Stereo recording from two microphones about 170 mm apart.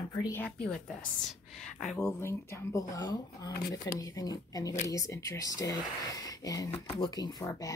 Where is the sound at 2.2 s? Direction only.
15° left (ahead or behind).